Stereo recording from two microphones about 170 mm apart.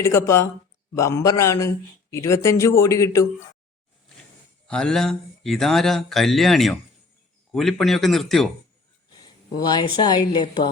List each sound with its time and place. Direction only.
0.0 s a man's voice: 15° left (ahead or behind)
4.7 s speech: 5° left (ahead or behind)
9.2 s a woman's voice: 25° left (ahead or behind)